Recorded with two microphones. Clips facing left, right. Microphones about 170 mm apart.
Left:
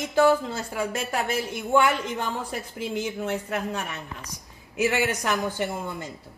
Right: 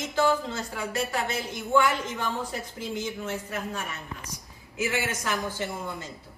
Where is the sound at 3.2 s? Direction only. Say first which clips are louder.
Left 4 dB; 60° left (ahead or behind).